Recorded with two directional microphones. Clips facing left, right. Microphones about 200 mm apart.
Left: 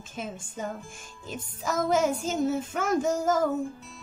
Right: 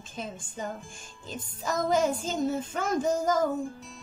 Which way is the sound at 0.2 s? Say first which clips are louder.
Left 1 dB; 5° left (ahead or behind).